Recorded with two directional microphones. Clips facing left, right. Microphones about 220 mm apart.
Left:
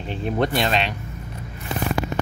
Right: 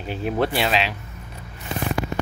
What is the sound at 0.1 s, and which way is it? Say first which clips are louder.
Speech: even; 5° right (ahead or behind).